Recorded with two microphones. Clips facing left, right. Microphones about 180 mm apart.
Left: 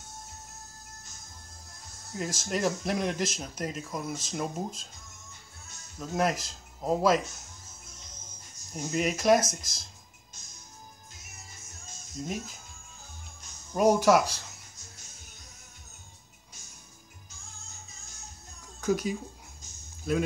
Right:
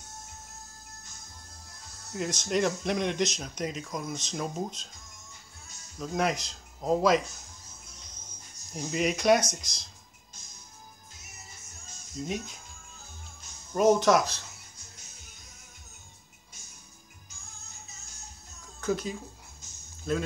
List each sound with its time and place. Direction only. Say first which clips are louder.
2.1 s speech: right 3 dB; 5° left (ahead or behind)
5.9 s speech: even; 5° left (ahead or behind)
8.9 s speech: even; centre (ahead or behind)
12.2 s speech: right 1 dB; centre (ahead or behind)
13.7 s speech: even; 10° left (ahead or behind)
18.8 s speech: left 2 dB; 10° left (ahead or behind)